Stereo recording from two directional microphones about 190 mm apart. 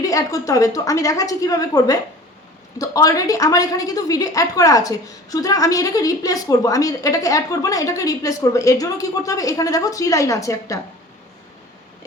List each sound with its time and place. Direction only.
0.0 s a woman's voice: 15° left (ahead or behind)